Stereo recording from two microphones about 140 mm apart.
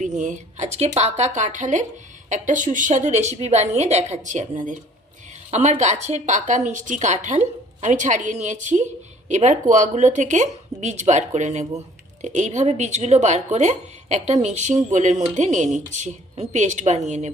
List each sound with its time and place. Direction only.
0.2 s speech: 60° right (ahead or behind)
5.5 s a woman's voice: 50° right (ahead or behind)